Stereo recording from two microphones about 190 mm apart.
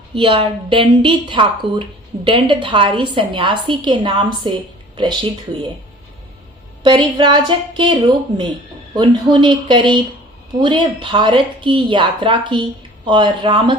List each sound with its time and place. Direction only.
0.1 s a woman's voice: 25° right (ahead or behind)
6.8 s a woman's voice: 25° right (ahead or behind)
9.0 s a woman's voice: 25° right (ahead or behind)